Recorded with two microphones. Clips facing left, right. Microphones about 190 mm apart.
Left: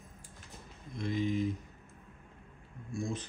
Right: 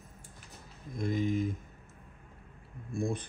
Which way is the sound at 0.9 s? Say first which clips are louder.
Right 2 dB; 50° right (ahead or behind).